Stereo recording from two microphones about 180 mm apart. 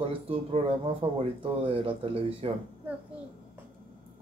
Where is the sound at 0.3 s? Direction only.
30° right (ahead or behind).